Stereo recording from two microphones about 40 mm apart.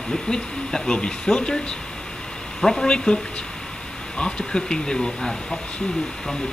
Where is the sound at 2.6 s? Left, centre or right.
Centre.